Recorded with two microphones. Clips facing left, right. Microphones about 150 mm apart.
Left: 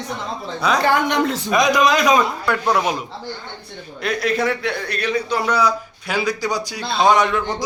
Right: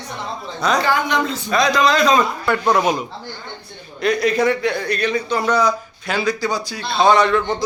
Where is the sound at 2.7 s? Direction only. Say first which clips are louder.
Right 2 dB; centre (ahead or behind).